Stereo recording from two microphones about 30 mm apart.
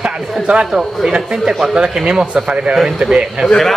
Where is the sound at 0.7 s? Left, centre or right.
Right.